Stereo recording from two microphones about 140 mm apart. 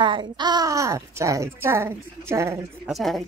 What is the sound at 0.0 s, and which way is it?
Speech, 35° right (ahead or behind).